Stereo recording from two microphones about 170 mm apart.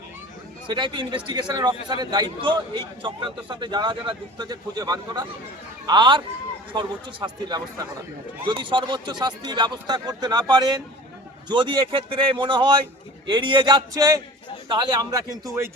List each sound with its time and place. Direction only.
0.7 s a man's voice: 25° right (ahead or behind)